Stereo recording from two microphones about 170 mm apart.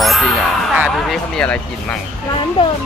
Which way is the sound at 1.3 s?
5° left (ahead or behind).